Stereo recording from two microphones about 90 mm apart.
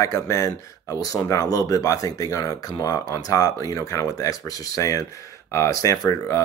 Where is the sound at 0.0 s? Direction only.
35° left (ahead or behind).